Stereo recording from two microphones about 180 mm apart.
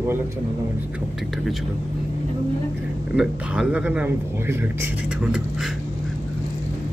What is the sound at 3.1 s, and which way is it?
Speech, 5° right (ahead or behind).